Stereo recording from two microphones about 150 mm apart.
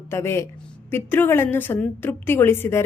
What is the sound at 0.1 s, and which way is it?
A woman's voice, 15° left (ahead or behind).